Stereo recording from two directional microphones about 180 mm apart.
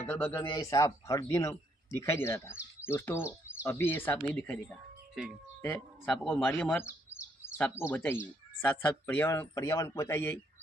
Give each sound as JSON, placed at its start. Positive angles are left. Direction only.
{"t": 0.1, "sound": "speech", "side_deg": 5}
{"t": 0.4, "sound": "speech", "side_deg": 20}
{"t": 5.2, "sound": "a man's voice", "side_deg": -5}
{"t": 5.6, "sound": "a man's voice", "side_deg": 10}
{"t": 6.5, "sound": "bird", "side_deg": 10}
{"t": 7.8, "sound": "speech", "side_deg": 15}